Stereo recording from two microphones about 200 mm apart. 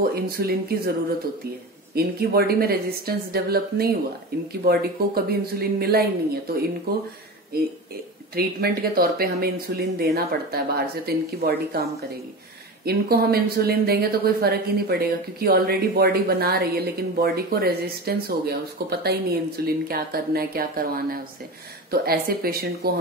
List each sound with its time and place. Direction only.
0.0 s a woman's voice: 50° right (ahead or behind)
2.0 s a woman's voice: 50° right (ahead or behind)
8.4 s a woman's voice: 50° right (ahead or behind)